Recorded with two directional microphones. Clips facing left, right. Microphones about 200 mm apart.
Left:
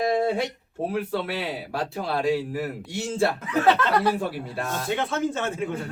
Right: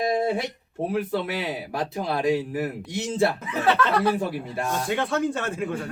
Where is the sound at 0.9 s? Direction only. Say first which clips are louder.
Right 1 dB; 20° right (ahead or behind).